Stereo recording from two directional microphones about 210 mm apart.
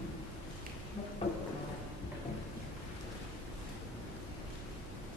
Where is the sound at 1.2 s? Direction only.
30° left (ahead or behind).